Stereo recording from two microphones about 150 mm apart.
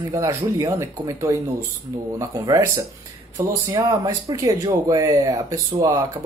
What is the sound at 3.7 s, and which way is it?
Speech, 25° right (ahead or behind).